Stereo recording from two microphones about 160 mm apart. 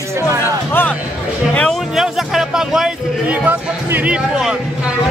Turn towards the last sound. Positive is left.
turn(degrees=-5)  # may be behind; listen again after turning